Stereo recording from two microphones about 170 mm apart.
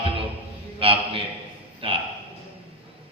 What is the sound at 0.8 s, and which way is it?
Speech, 35° right (ahead or behind).